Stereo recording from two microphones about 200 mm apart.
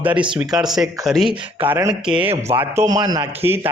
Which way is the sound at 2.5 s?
10° right (ahead or behind).